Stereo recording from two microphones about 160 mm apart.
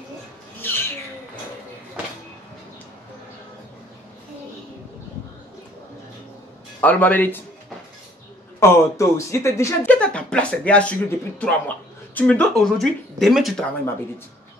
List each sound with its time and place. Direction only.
0.6 s a sound: 15° left (ahead or behind)
6.8 s speech: 10° left (ahead or behind)
8.5 s speech: 20° left (ahead or behind)
9.9 s speech: 5° left (ahead or behind)